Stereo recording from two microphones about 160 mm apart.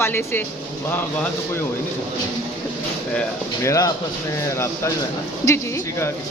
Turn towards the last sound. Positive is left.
turn(degrees=20)  # may be behind; listen again after turning